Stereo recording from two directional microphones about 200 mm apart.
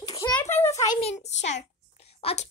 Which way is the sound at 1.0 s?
35° left (ahead or behind).